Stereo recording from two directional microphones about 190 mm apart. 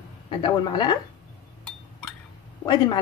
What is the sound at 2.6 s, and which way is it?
Speech, 20° left (ahead or behind).